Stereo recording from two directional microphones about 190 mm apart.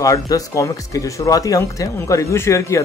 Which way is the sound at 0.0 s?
20° left (ahead or behind).